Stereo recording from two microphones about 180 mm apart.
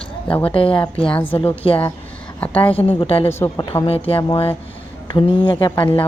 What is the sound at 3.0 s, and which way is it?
A woman's voice, 30° left (ahead or behind).